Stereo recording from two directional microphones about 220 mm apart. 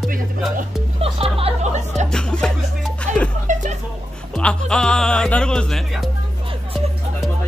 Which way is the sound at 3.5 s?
35° right (ahead or behind).